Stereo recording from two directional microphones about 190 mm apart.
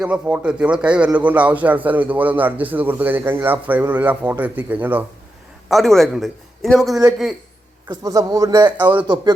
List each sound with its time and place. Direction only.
0.0 s a man's voice: 5° right (ahead or behind)
7.9 s a man's voice: 20° right (ahead or behind)